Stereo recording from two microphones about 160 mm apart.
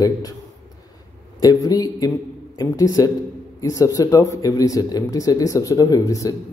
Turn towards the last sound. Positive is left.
turn(degrees=20)  # may be behind; listen again after turning